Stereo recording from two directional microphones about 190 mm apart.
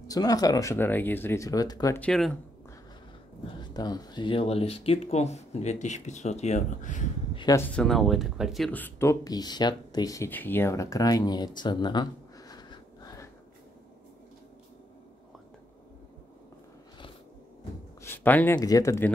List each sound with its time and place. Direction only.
0.1 s speech: 20° left (ahead or behind)
2.0 s speech: 5° left (ahead or behind)
3.7 s speech: 20° left (ahead or behind); by 7.1 s 40° left (ahead or behind)
7.3 s speech: 15° left (ahead or behind)
18.0 s speech: 10° left (ahead or behind)